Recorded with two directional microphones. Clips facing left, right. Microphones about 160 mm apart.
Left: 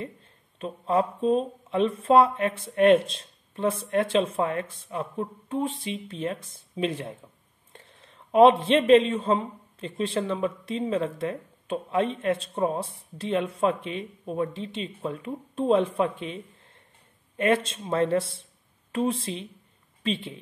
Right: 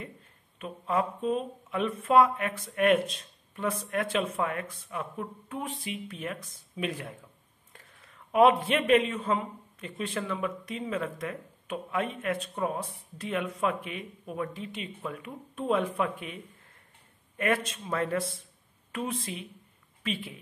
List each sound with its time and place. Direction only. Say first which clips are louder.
0.6 s a man's voice: left 5 dB; 30° left (ahead or behind)
17.4 s speech: left 5 dB; 25° left (ahead or behind)